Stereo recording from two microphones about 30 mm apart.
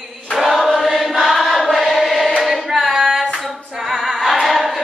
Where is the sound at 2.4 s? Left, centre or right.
Centre.